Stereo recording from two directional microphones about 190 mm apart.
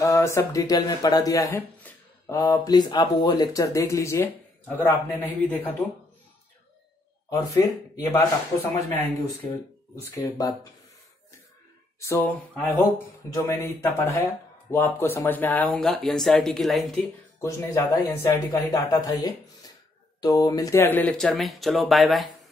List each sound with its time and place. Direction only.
0.0 s speech: 15° left (ahead or behind)
7.2 s speech: 15° left (ahead or behind)
12.9 s speech: 15° left (ahead or behind)
17.4 s speech: 15° left (ahead or behind)